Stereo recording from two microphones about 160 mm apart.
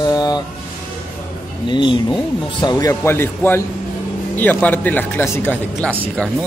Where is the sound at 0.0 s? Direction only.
25° left (ahead or behind).